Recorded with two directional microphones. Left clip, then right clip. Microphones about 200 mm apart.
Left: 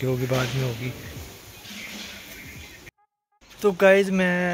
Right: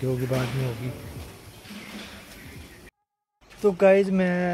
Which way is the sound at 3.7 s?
5° left (ahead or behind).